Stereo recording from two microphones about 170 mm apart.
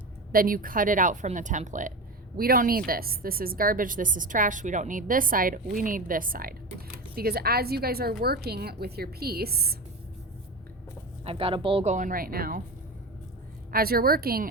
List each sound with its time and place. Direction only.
0.3 s speech: 55° right (ahead or behind)
2.3 s a woman's voice: 60° right (ahead or behind)
11.3 s speech: 35° right (ahead or behind); by 12.6 s 60° right (ahead or behind)
13.7 s a woman's voice: 60° right (ahead or behind)